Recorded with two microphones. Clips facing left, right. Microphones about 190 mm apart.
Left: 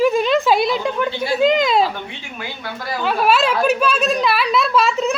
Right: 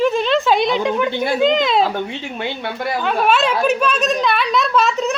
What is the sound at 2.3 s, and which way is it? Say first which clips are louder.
Speech: right 5 dB; 25° right (ahead or behind).